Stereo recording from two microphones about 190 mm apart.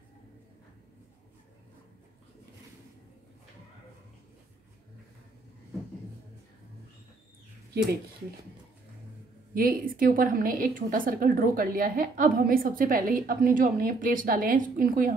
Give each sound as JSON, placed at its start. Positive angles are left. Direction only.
{"t": 9.5, "sound": "a woman's voice", "side_deg": -50}